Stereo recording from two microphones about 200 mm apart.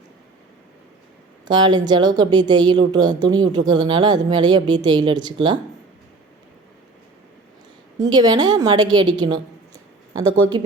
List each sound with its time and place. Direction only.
1.5 s speech: 20° right (ahead or behind)
8.1 s speech: 20° right (ahead or behind)